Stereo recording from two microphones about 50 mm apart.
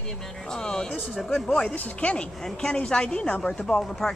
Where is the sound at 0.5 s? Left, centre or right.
Centre.